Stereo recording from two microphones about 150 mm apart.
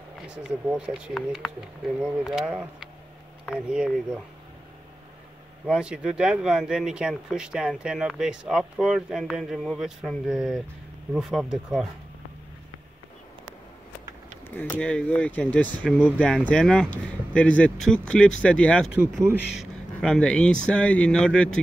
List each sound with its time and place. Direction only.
0.3 s speech: 5° right (ahead or behind)
5.7 s speech: 5° right (ahead or behind)
14.5 s speech: 10° left (ahead or behind)
18.9 s speech: 15° right (ahead or behind)
19.5 s speech: centre (ahead or behind)